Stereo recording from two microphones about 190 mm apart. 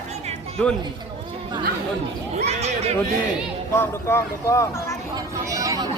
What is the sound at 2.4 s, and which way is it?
Speech, 35° right (ahead or behind).